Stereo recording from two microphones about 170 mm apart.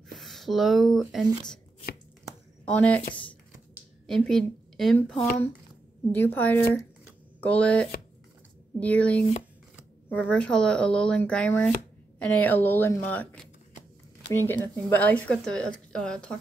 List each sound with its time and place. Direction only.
0.2 s speech: centre (ahead or behind)
2.6 s speech: 5° left (ahead or behind)
4.1 s a woman's voice: 5° left (ahead or behind)